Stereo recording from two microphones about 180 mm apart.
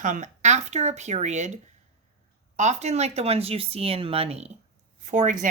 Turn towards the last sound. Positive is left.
turn(degrees=-45)  # may be behind; listen again after turning